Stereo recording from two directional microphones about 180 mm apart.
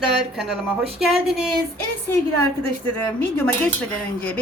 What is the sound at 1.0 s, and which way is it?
Speech, centre (ahead or behind).